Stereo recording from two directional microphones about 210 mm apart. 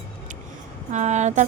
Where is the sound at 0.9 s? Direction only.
35° right (ahead or behind).